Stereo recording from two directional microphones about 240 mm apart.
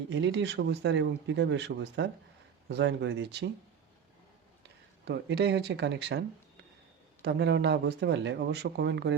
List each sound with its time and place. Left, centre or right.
0.1 s speech: right
5.0 s speech: right